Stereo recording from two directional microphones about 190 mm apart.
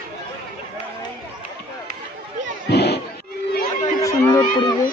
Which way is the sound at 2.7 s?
60° left (ahead or behind).